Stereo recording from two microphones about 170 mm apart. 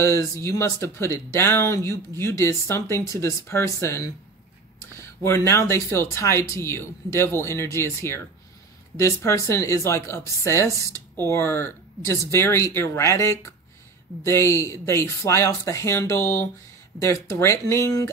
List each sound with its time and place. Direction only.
0.0 s speech: 15° left (ahead or behind)